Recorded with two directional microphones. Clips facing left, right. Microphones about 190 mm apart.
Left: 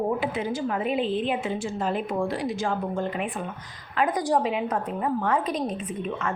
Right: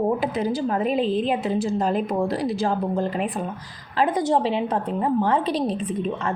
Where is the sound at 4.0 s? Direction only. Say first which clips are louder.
Right 3 dB; 25° right (ahead or behind).